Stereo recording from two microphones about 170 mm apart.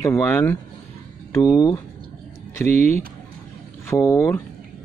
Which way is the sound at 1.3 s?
20° left (ahead or behind).